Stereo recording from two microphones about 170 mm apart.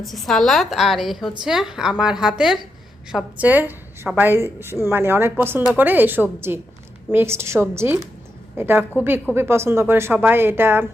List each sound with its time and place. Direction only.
0.0 s a woman's voice: centre (ahead or behind)